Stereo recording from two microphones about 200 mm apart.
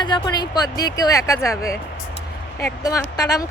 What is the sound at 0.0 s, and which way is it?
Speech, 20° left (ahead or behind).